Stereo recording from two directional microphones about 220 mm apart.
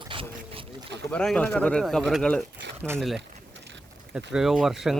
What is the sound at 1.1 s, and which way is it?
Speech, 5° left (ahead or behind).